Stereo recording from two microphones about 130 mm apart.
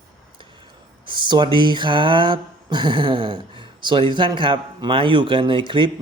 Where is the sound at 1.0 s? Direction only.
35° right (ahead or behind).